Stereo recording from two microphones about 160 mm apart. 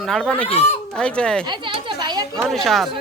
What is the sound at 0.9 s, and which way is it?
Speech, 5° left (ahead or behind).